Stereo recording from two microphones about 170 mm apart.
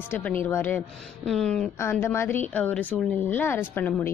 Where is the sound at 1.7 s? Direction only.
15° left (ahead or behind).